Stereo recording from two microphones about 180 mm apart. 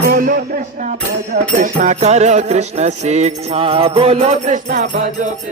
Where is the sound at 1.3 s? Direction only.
45° right (ahead or behind).